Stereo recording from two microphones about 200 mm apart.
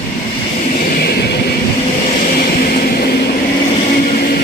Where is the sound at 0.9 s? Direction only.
50° left (ahead or behind).